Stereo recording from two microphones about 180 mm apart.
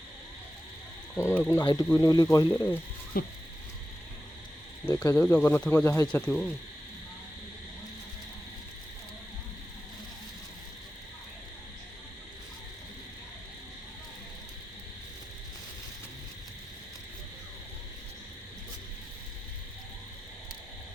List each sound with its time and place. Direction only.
1.1 s speech: 10° left (ahead or behind)
3.1 s a sound: 55° left (ahead or behind)
4.9 s speech: 10° left (ahead or behind)